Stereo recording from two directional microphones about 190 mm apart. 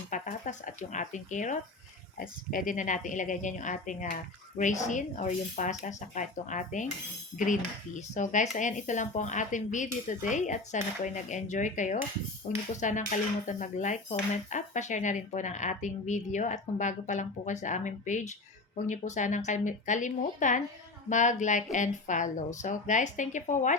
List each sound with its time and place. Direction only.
0.1 s a woman's voice: 40° left (ahead or behind)